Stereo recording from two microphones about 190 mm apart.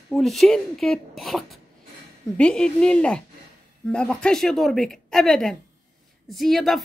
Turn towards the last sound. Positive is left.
turn(degrees=0)  # may be behind; listen again after turning